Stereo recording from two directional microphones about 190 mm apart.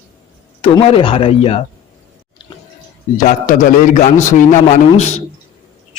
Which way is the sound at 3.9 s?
40° left (ahead or behind).